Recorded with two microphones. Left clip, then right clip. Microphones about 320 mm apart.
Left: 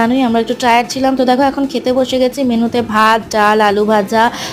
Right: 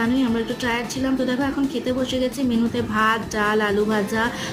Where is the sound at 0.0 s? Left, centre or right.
Centre.